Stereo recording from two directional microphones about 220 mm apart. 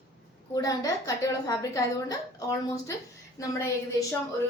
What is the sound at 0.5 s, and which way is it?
A woman's voice, 15° left (ahead or behind).